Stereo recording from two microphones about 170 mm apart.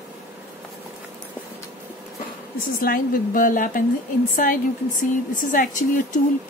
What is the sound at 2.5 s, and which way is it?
A woman's voice, 55° left (ahead or behind).